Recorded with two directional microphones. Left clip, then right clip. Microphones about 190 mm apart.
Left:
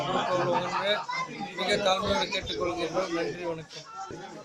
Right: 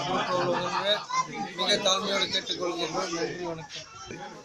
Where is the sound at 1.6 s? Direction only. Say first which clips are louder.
Right 1 dB; 15° left (ahead or behind).